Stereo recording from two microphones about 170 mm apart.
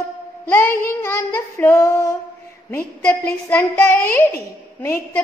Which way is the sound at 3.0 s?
10° left (ahead or behind).